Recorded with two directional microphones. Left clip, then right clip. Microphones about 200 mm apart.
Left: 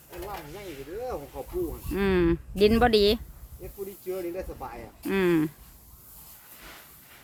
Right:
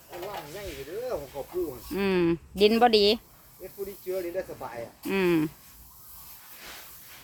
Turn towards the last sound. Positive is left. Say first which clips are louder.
# left 1 dB
turn(degrees=10)  # may be behind; listen again after turning